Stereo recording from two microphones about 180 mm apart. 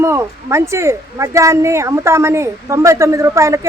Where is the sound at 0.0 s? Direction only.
15° right (ahead or behind).